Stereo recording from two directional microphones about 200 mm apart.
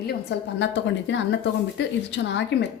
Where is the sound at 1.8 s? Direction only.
60° left (ahead or behind).